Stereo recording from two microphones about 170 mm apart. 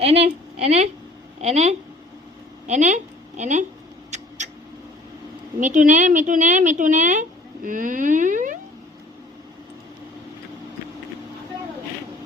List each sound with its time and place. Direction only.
0.0 s a woman's voice: 35° right (ahead or behind)
4.4 s mouse: 45° right (ahead or behind)
5.5 s a woman's voice: 50° right (ahead or behind)